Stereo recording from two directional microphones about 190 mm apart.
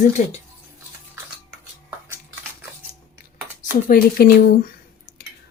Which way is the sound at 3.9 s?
50° left (ahead or behind).